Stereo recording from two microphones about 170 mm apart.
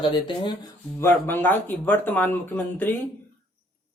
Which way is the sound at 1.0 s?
10° left (ahead or behind).